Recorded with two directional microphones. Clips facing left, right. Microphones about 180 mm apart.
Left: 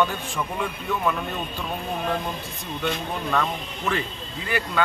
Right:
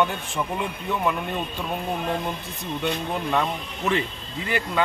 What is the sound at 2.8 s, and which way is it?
Speech, 20° right (ahead or behind).